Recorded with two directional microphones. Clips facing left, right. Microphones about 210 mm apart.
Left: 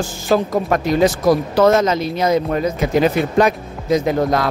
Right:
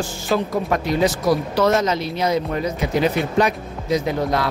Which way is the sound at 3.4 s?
50° left (ahead or behind).